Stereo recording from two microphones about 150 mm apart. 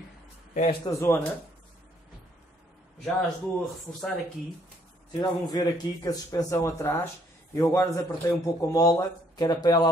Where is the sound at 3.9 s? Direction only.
10° left (ahead or behind).